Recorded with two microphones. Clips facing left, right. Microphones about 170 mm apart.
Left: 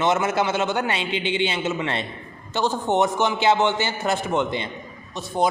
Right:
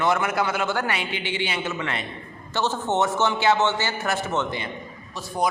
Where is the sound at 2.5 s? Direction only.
15° left (ahead or behind).